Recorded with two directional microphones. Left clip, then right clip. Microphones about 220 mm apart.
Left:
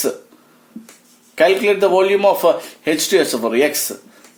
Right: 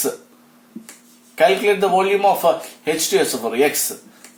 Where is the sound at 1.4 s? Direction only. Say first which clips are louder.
Left 2 dB; 50° left (ahead or behind).